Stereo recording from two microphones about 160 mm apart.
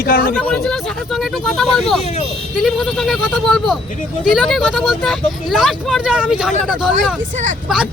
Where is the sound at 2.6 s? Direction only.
Centre (ahead or behind).